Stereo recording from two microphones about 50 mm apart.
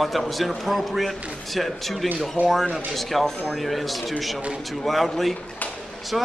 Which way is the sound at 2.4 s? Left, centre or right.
Right.